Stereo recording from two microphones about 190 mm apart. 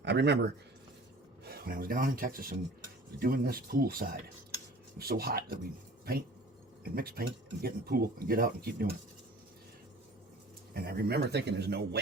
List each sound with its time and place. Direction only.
0.0 s a man's voice: 65° right (ahead or behind)
1.5 s speech: 55° right (ahead or behind)
6.8 s speech: 50° right (ahead or behind)
10.8 s a man's voice: 55° right (ahead or behind)